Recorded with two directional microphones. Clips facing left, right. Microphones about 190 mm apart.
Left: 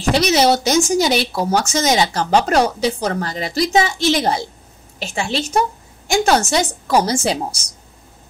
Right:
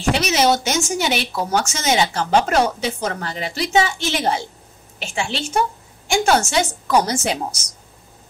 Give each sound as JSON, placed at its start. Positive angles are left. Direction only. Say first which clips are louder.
{"t": 0.1, "sound": "speech", "louder": "left 3 dB", "side_deg": 35}